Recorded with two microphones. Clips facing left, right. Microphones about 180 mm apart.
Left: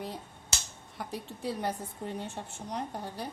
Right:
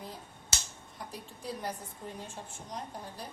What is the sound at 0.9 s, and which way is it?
A woman's voice, 70° left (ahead or behind).